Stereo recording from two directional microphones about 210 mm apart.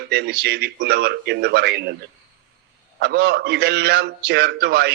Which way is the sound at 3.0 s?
50° right (ahead or behind).